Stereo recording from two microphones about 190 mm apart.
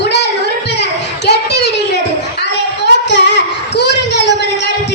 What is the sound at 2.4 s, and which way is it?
Child singing, 65° left (ahead or behind).